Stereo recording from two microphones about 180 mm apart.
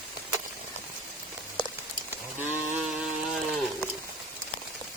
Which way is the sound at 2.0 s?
10° right (ahead or behind).